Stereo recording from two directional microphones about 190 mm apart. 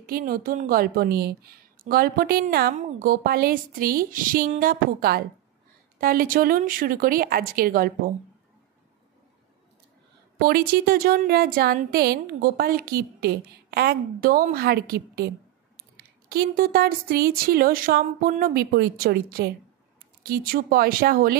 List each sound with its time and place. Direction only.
0.0 s a woman's voice: 50° right (ahead or behind)
10.4 s a woman's voice: 50° right (ahead or behind)